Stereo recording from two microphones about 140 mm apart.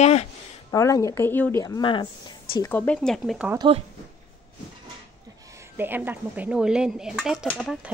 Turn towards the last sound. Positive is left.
turn(degrees=0)  # may be behind; listen again after turning